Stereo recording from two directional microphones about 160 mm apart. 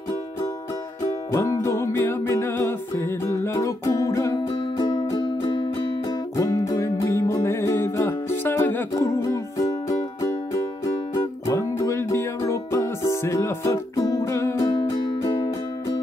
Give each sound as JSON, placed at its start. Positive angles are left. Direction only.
{"t": 1.0, "sound": "music", "side_deg": 20}